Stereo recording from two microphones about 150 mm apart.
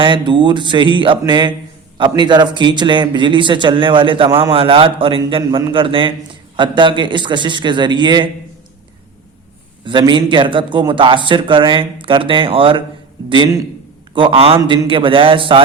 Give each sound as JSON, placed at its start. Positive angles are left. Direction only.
{"t": 0.0, "sound": "speech", "side_deg": -35}
{"t": 9.8, "sound": "speech", "side_deg": -30}
{"t": 14.6, "sound": "speech", "side_deg": -25}
{"t": 14.8, "sound": "speech", "side_deg": -35}